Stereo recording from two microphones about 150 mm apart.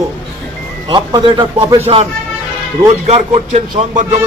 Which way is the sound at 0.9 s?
30° right (ahead or behind).